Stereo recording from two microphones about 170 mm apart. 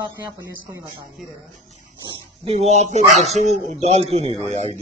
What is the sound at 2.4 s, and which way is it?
Speech, 40° right (ahead or behind).